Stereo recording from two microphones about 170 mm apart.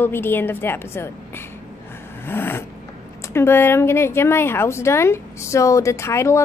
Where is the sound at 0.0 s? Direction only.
10° left (ahead or behind).